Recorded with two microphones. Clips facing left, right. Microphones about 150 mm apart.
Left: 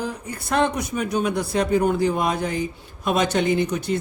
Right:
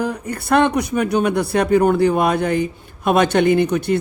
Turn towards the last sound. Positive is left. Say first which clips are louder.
# right 6 dB
turn(degrees=-60)  # may be behind; listen again after turning